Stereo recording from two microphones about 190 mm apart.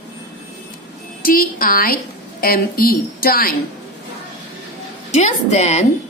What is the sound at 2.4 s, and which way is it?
A woman's voice, 50° left (ahead or behind).